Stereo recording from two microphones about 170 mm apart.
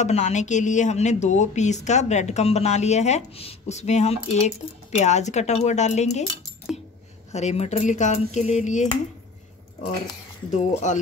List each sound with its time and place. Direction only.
0.0 s a woman's voice: 40° left (ahead or behind)
6.7 s a sound: centre (ahead or behind)
7.3 s speech: 40° left (ahead or behind)
10.5 s speech: 45° left (ahead or behind)